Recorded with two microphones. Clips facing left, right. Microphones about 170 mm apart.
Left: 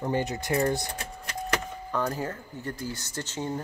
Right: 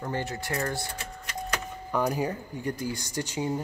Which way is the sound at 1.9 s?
15° right (ahead or behind).